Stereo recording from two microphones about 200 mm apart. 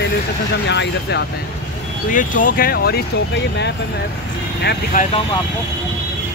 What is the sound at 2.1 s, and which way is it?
Speech, 40° left (ahead or behind).